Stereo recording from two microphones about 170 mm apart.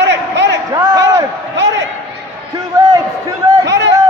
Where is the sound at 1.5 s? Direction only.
90° right.